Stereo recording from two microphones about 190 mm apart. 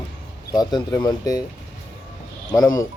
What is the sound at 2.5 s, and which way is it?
Speech, 20° left (ahead or behind).